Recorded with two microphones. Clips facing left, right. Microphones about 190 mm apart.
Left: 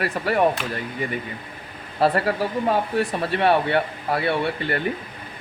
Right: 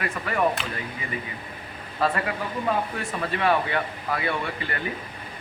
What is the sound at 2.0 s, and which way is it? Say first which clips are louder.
Speech: left 6 dB; 35° left (ahead or behind).